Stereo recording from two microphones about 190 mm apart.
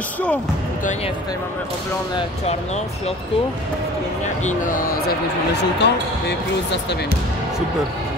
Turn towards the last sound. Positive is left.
turn(degrees=65)  # may be behind; listen again after turning